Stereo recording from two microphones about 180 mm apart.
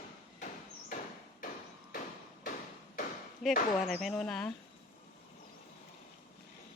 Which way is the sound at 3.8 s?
Centre (ahead or behind).